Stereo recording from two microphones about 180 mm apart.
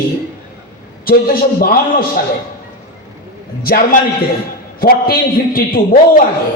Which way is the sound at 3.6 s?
55° left (ahead or behind).